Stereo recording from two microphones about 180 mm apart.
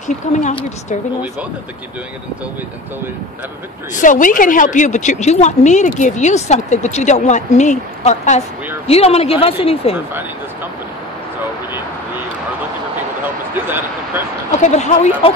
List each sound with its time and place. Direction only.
0.3 s a woman's voice: 40° left (ahead or behind)
3.9 s a woman's voice: 45° left (ahead or behind)
14.6 s a woman's voice: 40° left (ahead or behind)